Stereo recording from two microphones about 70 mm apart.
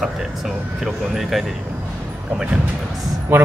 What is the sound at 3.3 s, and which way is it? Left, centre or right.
Speech, right.